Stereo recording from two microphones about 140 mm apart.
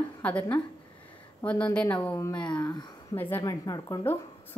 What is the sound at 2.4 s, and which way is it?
A woman's voice, 30° left (ahead or behind).